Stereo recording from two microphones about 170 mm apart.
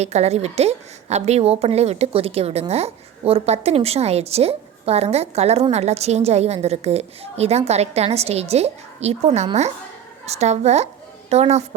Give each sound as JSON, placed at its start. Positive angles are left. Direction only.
{"t": 0.0, "sound": "a woman's voice", "side_deg": -40}